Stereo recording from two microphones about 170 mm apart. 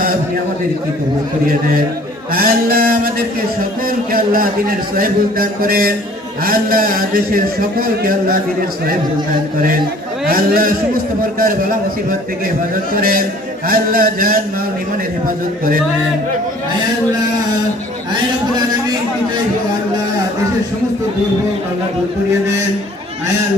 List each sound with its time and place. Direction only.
2.3 s a man's voice: 60° right (ahead or behind)
10.2 s a man's voice: 60° right (ahead or behind)
13.0 s a man's voice: 60° right (ahead or behind)